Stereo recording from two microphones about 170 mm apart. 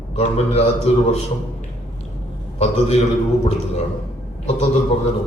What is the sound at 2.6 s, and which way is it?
Speech, 35° left (ahead or behind).